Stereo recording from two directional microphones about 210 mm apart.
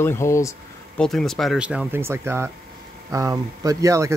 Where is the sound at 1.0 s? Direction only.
Centre (ahead or behind).